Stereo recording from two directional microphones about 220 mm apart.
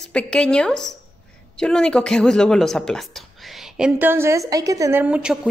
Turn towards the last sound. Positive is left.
turn(degrees=-5)  # may be behind; listen again after turning